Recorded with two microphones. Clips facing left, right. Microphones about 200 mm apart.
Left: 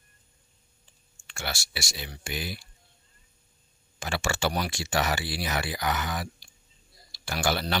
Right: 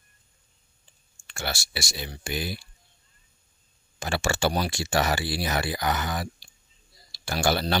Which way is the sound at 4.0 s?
35° right (ahead or behind).